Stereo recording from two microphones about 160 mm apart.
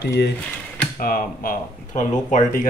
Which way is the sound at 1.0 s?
65° left (ahead or behind).